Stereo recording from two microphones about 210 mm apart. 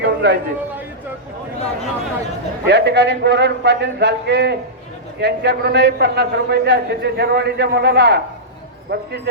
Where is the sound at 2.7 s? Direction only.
55° right (ahead or behind).